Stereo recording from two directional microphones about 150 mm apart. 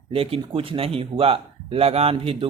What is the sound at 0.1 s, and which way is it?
Speech, 40° right (ahead or behind).